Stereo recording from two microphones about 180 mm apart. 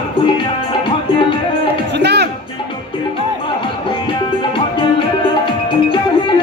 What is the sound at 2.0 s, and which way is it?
Music, 70° right (ahead or behind).